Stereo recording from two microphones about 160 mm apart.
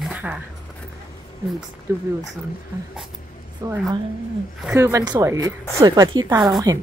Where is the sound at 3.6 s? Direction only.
20° right (ahead or behind).